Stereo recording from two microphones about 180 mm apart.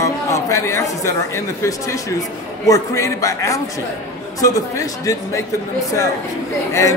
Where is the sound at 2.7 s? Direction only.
20° left (ahead or behind).